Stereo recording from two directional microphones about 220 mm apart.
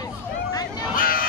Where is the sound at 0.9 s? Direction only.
40° left (ahead or behind).